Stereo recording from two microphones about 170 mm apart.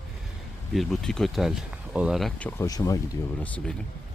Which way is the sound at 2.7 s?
20° left (ahead or behind).